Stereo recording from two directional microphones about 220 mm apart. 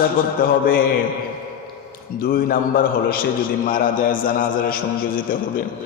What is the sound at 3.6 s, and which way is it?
A man's voice, 40° left (ahead or behind).